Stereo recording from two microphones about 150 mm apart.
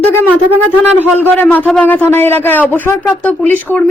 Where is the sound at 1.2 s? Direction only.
10° left (ahead or behind).